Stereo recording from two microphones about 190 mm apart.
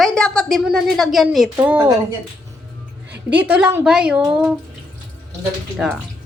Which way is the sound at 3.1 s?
10° right (ahead or behind).